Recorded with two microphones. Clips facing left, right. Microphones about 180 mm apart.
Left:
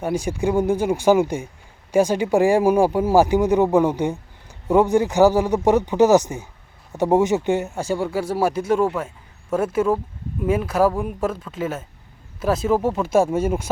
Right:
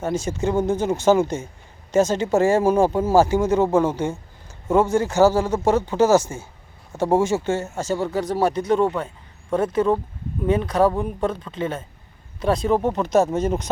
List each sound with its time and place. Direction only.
0.0 s speech: 15° left (ahead or behind)